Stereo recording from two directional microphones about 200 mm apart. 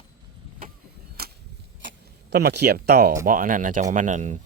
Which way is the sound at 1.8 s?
65° right (ahead or behind).